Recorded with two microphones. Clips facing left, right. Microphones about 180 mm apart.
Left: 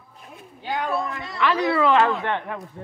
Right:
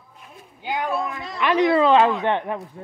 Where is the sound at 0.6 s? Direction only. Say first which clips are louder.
Right 1 dB; 15° right (ahead or behind).